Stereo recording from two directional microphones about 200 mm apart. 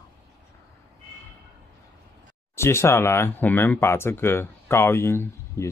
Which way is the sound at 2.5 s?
15° left (ahead or behind).